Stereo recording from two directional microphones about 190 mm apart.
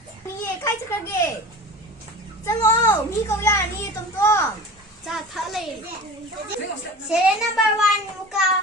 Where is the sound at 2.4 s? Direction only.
15° left (ahead or behind).